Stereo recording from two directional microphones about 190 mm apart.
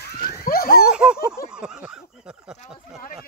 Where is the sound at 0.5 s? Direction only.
50° left (ahead or behind).